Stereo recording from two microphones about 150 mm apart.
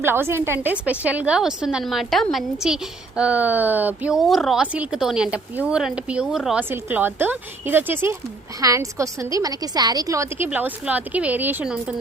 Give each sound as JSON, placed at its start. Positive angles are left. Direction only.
{"t": 0.0, "sound": "a woman's voice", "side_deg": -15}